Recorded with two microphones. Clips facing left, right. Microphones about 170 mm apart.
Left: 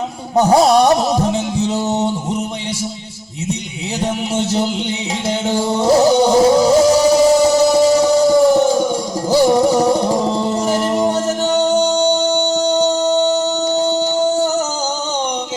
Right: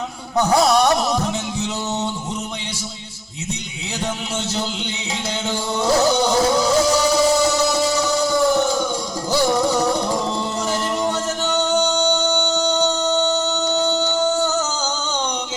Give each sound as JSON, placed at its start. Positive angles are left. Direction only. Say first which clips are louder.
{"t": 0.3, "sound": "music", "louder": "left 5 dB", "side_deg": 30}
{"t": 4.0, "sound": "a sound", "louder": "left 7 dB", "side_deg": 25}
{"t": 5.5, "sound": "music", "louder": "left 6 dB", "side_deg": 30}